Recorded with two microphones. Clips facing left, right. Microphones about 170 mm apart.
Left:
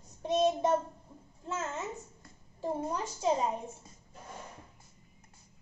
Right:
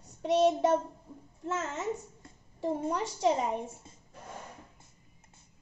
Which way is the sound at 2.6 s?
75° right (ahead or behind).